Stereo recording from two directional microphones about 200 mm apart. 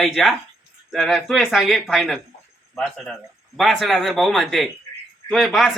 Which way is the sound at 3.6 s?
Centre (ahead or behind).